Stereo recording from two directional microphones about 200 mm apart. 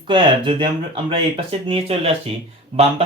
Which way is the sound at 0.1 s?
25° right (ahead or behind).